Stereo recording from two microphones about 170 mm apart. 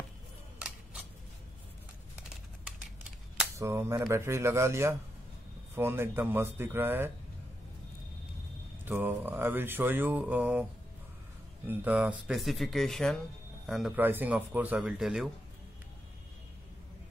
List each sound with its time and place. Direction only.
0.6 s scissors: 5° right (ahead or behind)
3.5 s speech: 15° right (ahead or behind)
8.8 s speech: 10° right (ahead or behind)
13.9 s speech: 10° right (ahead or behind)